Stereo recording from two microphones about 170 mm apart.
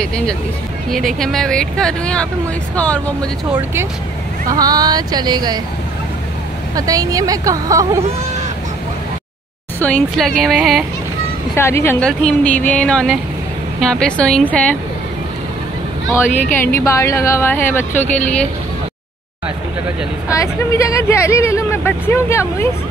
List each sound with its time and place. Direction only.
0.0 s speech: 5° left (ahead or behind)
4.5 s speech: 20° right (ahead or behind)
6.7 s speech: 20° right (ahead or behind)
9.8 s speech: 10° left (ahead or behind)
11.5 s speech: 15° left (ahead or behind)
16.5 s speech: 15° left (ahead or behind)
20.2 s speech: 20° left (ahead or behind)